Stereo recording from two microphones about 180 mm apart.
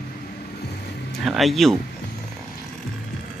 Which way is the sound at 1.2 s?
Centre (ahead or behind).